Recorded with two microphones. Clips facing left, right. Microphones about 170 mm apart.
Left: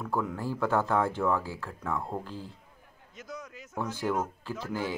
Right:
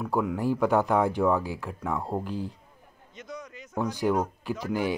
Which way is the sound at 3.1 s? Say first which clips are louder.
Right 2 dB; 5° left (ahead or behind).